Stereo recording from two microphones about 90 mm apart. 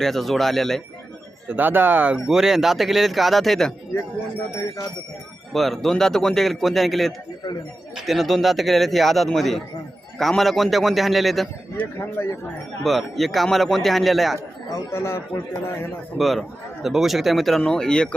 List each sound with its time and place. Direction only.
0.0 s a man's voice: centre (ahead or behind)
1.5 s speech: 20° right (ahead or behind)
2.1 s a man's voice: 5° right (ahead or behind)
5.5 s a man's voice: centre (ahead or behind)
11.8 s speech: 25° left (ahead or behind)
12.8 s a man's voice: centre (ahead or behind)
14.3 s speech: 30° left (ahead or behind)
16.1 s a man's voice: centre (ahead or behind)